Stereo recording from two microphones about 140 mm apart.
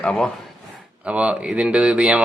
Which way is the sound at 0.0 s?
10° left (ahead or behind).